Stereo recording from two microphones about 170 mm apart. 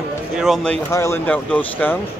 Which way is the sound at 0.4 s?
Centre (ahead or behind).